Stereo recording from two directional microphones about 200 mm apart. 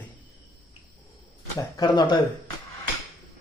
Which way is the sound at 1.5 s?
20° left (ahead or behind).